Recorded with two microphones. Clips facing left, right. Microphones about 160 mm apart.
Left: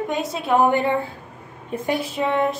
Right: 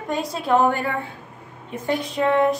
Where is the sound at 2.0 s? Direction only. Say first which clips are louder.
Right 5 dB; 5° left (ahead or behind).